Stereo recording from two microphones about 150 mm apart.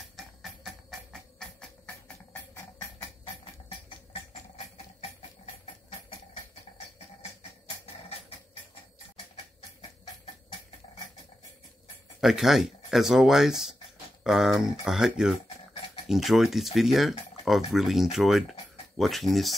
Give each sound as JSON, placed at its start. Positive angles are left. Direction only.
{"t": 0.1, "sound": "music", "side_deg": 0}
{"t": 7.2, "sound": "music", "side_deg": 45}
{"t": 12.2, "sound": "speech", "side_deg": -5}